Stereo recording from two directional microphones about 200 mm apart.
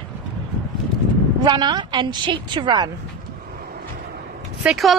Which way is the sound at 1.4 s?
20° right (ahead or behind).